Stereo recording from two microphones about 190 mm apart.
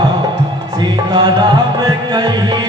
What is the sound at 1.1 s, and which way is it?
Music, 25° right (ahead or behind).